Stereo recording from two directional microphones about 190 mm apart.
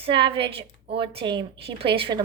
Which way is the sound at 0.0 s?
25° right (ahead or behind).